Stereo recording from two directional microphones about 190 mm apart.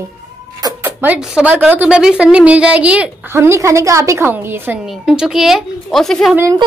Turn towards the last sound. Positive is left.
turn(degrees=-15)  # may be behind; listen again after turning